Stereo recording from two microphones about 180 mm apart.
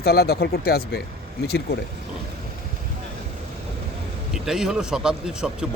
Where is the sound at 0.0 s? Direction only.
60° left (ahead or behind).